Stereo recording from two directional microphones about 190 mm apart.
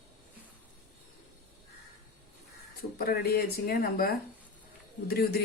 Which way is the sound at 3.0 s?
55° left (ahead or behind).